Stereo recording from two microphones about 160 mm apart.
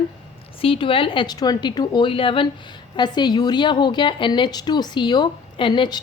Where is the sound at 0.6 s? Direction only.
35° left (ahead or behind).